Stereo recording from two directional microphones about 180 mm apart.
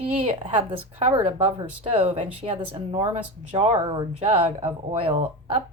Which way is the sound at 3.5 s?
40° right (ahead or behind).